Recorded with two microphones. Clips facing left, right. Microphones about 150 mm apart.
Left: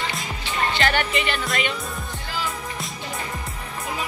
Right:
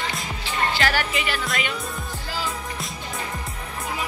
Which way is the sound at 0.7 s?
5° right (ahead or behind).